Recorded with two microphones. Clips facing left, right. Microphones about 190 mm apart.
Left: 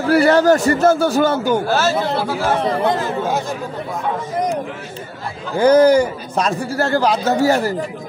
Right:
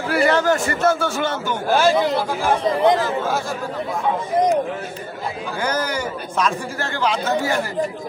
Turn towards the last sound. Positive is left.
turn(degrees=40)  # may be behind; listen again after turning